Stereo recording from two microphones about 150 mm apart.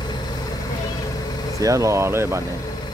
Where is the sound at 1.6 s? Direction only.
20° right (ahead or behind).